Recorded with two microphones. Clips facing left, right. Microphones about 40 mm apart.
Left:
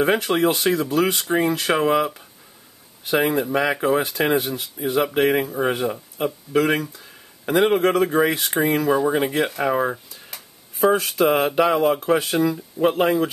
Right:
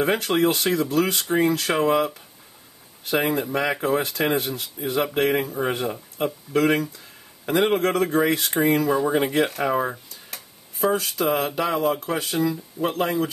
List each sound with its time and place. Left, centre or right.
0.0 s speech: centre
10.9 s speech: left